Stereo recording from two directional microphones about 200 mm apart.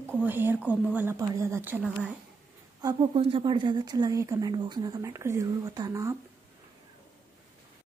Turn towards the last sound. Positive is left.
turn(degrees=-15)  # may be behind; listen again after turning